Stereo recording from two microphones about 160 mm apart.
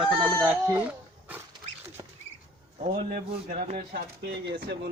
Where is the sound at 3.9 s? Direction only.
75° right (ahead or behind).